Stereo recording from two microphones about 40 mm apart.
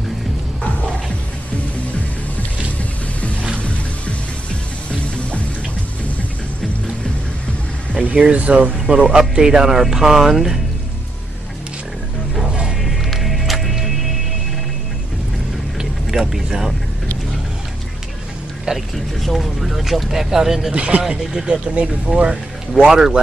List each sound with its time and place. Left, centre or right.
3.5 s music: left
8.1 s speech: right
8.7 s speech: centre
12.8 s music: centre
15.8 s vehicle: centre
16.4 s speech: centre
18.7 s speech: centre
19.2 s speech: centre
20.7 s speech: right
21.2 s speech: centre